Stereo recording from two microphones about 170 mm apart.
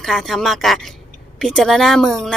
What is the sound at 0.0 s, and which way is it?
A woman's voice, centre (ahead or behind).